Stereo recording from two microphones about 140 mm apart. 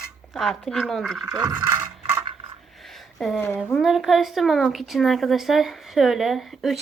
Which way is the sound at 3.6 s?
5° right (ahead or behind).